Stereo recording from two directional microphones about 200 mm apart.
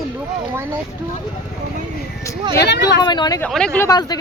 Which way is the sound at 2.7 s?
60° left (ahead or behind).